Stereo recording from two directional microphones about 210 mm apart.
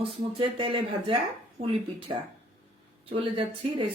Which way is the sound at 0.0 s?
25° right (ahead or behind).